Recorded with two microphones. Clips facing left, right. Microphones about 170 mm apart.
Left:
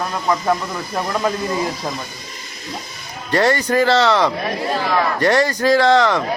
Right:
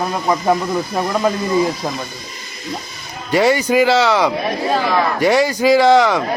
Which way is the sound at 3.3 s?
5° right (ahead or behind).